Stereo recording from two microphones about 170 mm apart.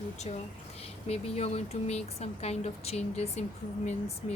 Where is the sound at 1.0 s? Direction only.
40° left (ahead or behind).